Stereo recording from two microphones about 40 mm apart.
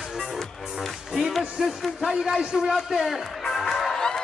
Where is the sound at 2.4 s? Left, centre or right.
Right.